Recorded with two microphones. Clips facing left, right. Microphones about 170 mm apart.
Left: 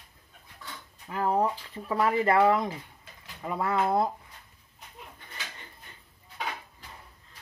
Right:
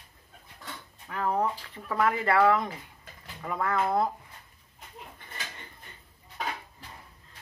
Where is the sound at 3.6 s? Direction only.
25° left (ahead or behind).